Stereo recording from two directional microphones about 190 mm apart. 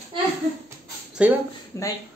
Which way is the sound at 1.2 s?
5° right (ahead or behind).